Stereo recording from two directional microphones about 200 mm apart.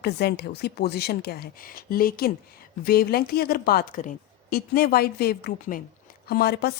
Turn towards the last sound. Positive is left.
turn(degrees=55)  # may be behind; listen again after turning